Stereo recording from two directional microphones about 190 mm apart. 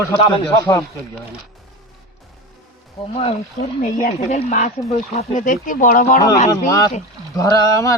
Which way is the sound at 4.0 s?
40° left (ahead or behind).